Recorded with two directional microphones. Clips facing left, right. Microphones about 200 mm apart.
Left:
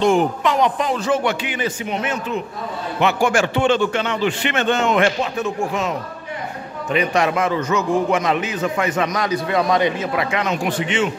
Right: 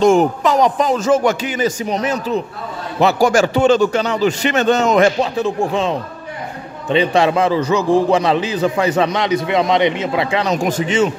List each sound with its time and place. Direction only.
0.0 s a man's voice: 45° right (ahead or behind)